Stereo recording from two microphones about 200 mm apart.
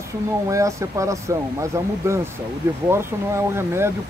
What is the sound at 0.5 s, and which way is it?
Speech, 15° right (ahead or behind).